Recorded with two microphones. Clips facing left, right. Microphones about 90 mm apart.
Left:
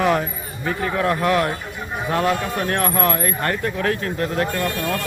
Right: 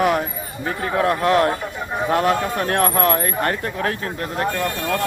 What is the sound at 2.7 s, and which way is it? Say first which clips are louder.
Speech: right 2 dB; 40° right (ahead or behind).